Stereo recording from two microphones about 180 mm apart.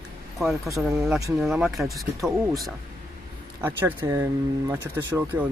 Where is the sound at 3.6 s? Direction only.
10° right (ahead or behind).